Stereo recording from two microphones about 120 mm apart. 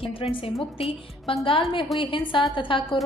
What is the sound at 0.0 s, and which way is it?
A woman's voice, 50° left (ahead or behind).